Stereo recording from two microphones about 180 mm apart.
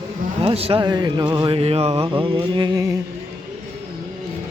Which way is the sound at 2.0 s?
25° right (ahead or behind).